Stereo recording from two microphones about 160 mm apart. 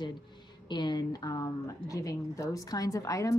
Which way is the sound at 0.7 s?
25° left (ahead or behind).